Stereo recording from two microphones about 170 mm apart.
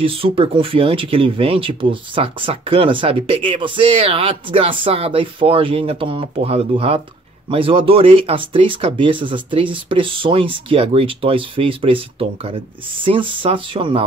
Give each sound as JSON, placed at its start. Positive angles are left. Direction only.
{"t": 0.0, "sound": "speech", "side_deg": -30}